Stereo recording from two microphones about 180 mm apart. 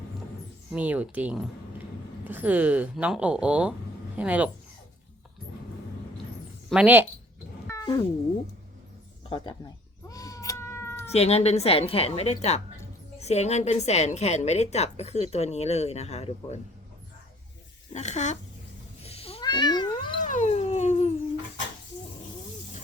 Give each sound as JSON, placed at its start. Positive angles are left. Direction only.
{"t": 0.7, "sound": "speech", "side_deg": -10}
{"t": 6.7, "sound": "speech", "side_deg": -10}
{"t": 7.7, "sound": "cat", "side_deg": 20}
{"t": 10.1, "sound": "cat", "side_deg": 20}
{"t": 11.1, "sound": "a woman's voice", "side_deg": 35}
{"t": 17.9, "sound": "a woman's voice", "side_deg": 40}
{"t": 19.0, "sound": "cat", "side_deg": 35}
{"t": 20.2, "sound": "a sound", "side_deg": 45}